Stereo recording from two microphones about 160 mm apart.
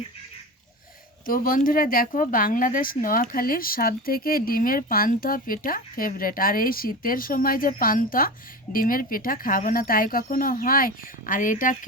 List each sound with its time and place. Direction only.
1.3 s speech: 60° left (ahead or behind)